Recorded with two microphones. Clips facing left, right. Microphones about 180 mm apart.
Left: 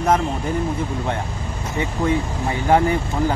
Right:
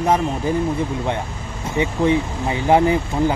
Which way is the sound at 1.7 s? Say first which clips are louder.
Right 3 dB; 20° right (ahead or behind).